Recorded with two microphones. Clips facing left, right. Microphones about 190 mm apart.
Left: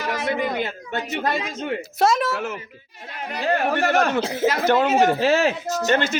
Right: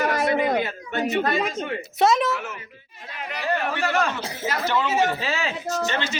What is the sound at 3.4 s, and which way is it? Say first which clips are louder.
Speech: left 4 dB; 60° left (ahead or behind).